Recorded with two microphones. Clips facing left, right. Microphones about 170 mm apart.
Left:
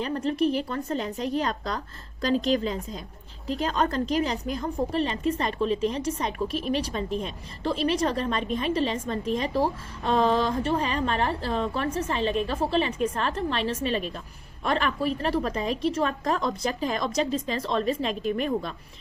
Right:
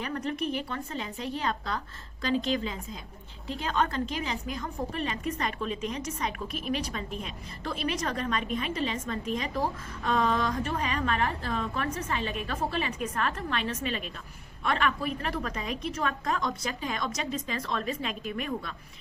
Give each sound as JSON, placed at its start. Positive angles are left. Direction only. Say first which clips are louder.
{"t": 0.0, "sound": "a woman's voice", "louder": "left 7 dB", "side_deg": 30}